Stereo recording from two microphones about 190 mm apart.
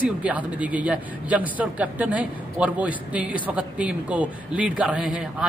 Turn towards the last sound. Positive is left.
turn(degrees=-5)  # may be behind; listen again after turning